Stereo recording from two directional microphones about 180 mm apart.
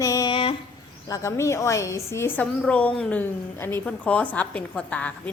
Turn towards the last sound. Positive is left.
turn(degrees=5)  # may be behind; listen again after turning